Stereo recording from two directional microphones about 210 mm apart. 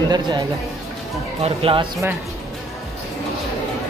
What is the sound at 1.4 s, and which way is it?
Speech, 25° right (ahead or behind).